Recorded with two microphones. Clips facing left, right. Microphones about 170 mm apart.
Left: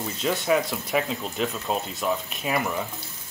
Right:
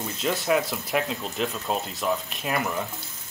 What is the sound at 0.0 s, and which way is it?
Speech, centre (ahead or behind).